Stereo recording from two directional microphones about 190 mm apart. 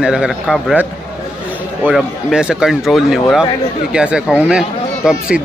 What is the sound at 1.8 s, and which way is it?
Speech, 5° right (ahead or behind).